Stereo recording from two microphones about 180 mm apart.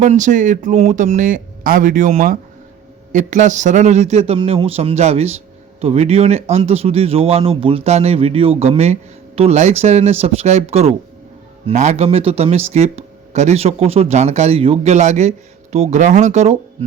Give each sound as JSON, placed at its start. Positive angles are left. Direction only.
{"t": 0.0, "sound": "speech", "side_deg": -45}